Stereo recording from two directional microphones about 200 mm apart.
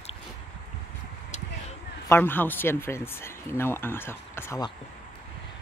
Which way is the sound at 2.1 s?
10° left (ahead or behind).